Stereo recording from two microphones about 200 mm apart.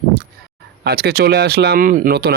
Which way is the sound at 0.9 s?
50° right (ahead or behind).